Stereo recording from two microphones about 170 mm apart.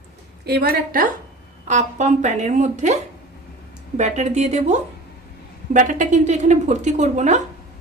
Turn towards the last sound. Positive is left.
turn(degrees=-45)  # may be behind; listen again after turning